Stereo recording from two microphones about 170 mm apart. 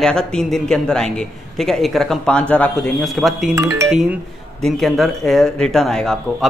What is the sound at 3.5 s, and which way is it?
Speech, 20° right (ahead or behind).